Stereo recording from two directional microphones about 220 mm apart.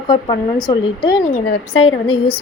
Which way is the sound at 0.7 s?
20° left (ahead or behind).